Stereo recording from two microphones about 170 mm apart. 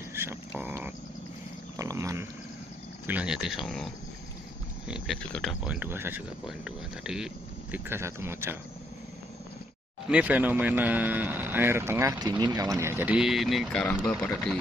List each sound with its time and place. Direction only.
0.1 s a sound: 15° right (ahead or behind)
3.1 s speech: 5° right (ahead or behind)
7.7 s speech: 15° right (ahead or behind)
10.0 s speech: 5° right (ahead or behind)